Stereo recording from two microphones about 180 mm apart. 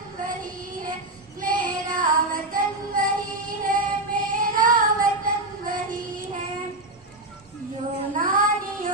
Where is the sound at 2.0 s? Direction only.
50° right (ahead or behind).